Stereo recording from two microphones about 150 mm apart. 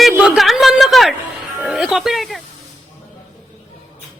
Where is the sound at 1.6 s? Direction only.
5° right (ahead or behind).